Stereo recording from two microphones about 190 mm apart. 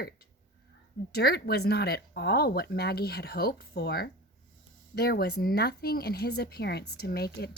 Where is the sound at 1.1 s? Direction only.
55° left (ahead or behind).